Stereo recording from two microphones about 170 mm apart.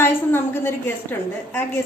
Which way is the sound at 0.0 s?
15° left (ahead or behind).